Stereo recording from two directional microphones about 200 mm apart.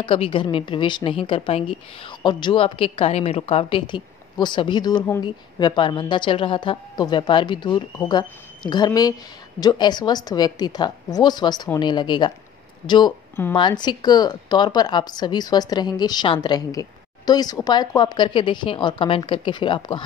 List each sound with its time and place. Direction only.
0.0 s a woman's voice: 25° left (ahead or behind)